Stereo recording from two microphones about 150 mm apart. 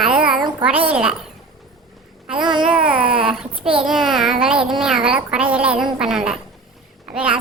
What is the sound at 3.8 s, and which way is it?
A child's voice, centre (ahead or behind).